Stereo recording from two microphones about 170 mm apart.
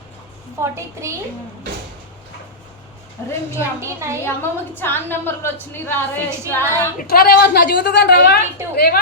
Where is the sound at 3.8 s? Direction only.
15° right (ahead or behind).